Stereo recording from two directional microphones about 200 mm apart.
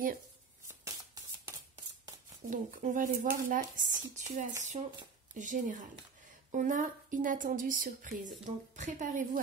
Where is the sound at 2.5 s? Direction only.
40° right (ahead or behind).